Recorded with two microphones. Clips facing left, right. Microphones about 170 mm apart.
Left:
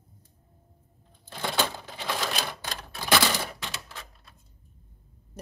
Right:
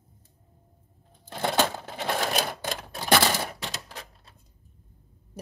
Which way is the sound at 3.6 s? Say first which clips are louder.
Right 2 dB; 35° right (ahead or behind).